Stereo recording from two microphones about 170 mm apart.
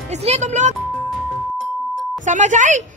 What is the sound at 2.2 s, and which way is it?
Speech, 45° right (ahead or behind).